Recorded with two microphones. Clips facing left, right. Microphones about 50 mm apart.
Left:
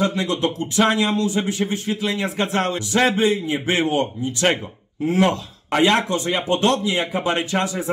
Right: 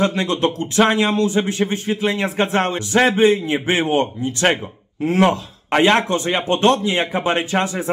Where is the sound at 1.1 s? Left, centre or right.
Right.